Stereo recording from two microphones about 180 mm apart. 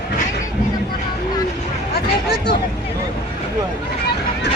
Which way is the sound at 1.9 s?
65° left (ahead or behind).